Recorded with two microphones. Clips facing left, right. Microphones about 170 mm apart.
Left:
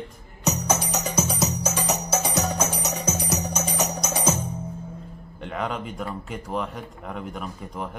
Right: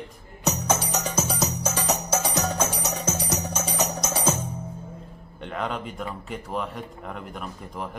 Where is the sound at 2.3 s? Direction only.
15° left (ahead or behind).